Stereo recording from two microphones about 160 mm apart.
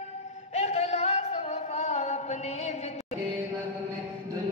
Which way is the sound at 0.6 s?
40° left (ahead or behind).